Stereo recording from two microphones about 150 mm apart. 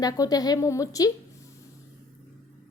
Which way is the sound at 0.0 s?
25° left (ahead or behind).